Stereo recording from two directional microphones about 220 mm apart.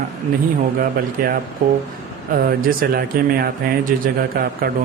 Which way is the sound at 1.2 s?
40° right (ahead or behind).